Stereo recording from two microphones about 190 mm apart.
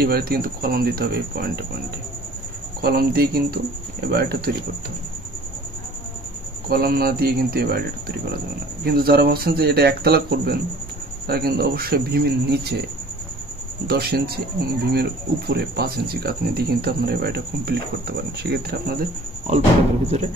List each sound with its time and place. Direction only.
0.0 s speech: 55° right (ahead or behind)
2.8 s speech: 55° right (ahead or behind)
6.7 s speech: 50° right (ahead or behind)
8.8 s speech: 55° right (ahead or behind)
13.8 s speech: 55° right (ahead or behind)